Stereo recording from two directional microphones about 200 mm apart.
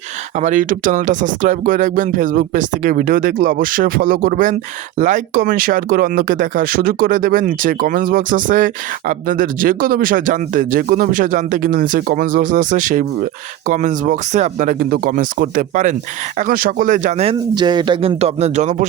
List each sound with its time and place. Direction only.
0.3 s speech: 40° right (ahead or behind)